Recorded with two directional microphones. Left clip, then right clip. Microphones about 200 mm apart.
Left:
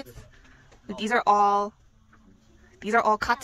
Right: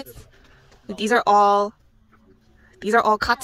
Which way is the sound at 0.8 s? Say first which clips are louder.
Right 4 dB; 15° right (ahead or behind).